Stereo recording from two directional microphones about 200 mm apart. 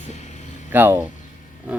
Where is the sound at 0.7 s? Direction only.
10° right (ahead or behind).